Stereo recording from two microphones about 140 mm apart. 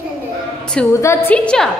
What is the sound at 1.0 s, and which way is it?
Speech, 15° left (ahead or behind).